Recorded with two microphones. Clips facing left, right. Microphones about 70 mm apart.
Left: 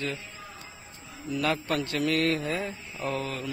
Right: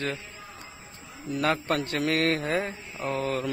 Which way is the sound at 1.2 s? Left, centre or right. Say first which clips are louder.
Right 2 dB; right.